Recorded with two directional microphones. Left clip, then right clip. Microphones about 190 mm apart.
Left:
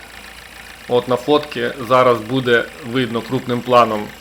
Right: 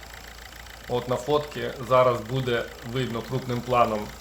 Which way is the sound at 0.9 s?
25° left (ahead or behind).